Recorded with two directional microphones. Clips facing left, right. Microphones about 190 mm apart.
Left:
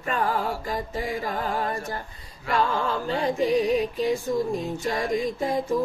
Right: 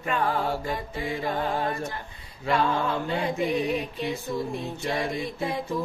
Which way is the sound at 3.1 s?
35° left (ahead or behind).